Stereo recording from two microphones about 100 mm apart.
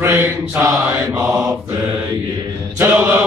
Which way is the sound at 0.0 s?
25° right (ahead or behind).